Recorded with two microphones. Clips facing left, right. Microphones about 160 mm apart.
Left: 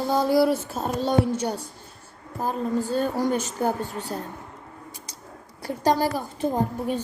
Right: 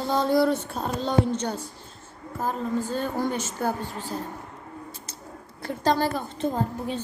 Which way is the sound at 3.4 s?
15° left (ahead or behind).